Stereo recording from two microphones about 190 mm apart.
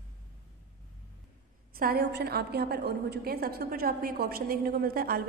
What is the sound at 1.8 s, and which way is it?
A woman's voice, 55° right (ahead or behind).